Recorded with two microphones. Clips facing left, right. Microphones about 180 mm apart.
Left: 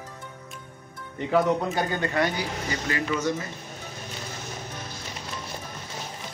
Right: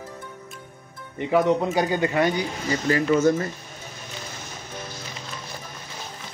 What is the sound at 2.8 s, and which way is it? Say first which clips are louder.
Speech: right 9 dB; 40° right (ahead or behind).